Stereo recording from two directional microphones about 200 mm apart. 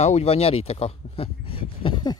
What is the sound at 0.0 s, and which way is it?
Speech, 30° left (ahead or behind).